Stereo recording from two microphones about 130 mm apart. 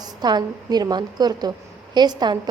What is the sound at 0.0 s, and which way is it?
A woman's voice, 35° right (ahead or behind).